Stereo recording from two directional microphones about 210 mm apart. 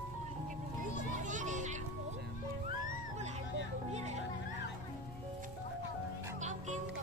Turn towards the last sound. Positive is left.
turn(degrees=-35)  # may be behind; listen again after turning